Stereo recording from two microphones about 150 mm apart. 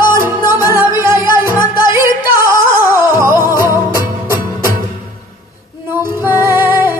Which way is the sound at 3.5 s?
15° right (ahead or behind).